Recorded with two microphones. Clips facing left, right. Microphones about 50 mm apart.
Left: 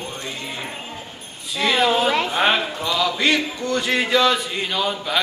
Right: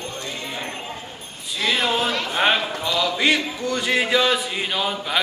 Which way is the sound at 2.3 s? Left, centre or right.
Centre.